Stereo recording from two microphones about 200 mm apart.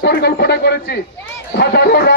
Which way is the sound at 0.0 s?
55° left (ahead or behind).